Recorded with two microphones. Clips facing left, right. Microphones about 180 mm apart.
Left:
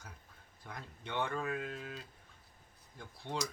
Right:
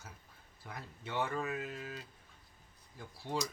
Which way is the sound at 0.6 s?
5° right (ahead or behind).